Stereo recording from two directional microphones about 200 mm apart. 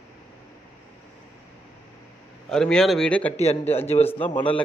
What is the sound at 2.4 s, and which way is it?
A man's voice, 5° left (ahead or behind).